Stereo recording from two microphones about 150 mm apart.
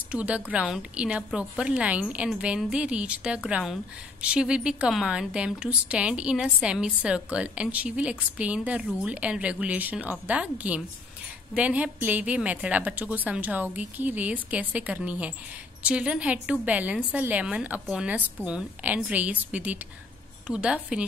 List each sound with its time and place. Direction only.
0.1 s a woman's voice: 10° right (ahead or behind)